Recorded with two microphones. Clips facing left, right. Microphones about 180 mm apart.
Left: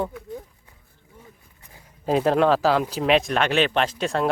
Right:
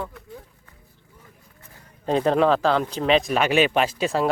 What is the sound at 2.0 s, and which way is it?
Speech, 5° left (ahead or behind).